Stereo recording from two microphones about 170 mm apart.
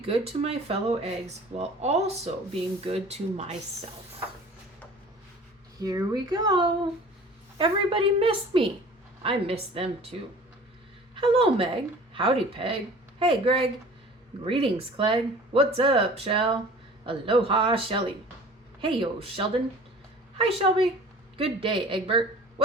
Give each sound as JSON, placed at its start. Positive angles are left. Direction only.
{"t": 0.0, "sound": "speech", "side_deg": -35}
{"t": 5.8, "sound": "a woman's voice", "side_deg": -20}